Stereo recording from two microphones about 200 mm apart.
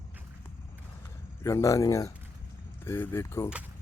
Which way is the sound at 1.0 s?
15° left (ahead or behind).